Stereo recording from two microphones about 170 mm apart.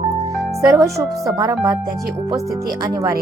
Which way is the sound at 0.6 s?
20° right (ahead or behind).